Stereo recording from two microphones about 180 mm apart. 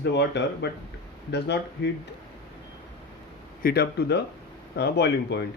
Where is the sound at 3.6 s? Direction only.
60° left (ahead or behind).